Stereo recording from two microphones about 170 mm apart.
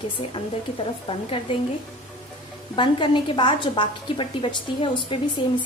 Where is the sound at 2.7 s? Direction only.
30° left (ahead or behind).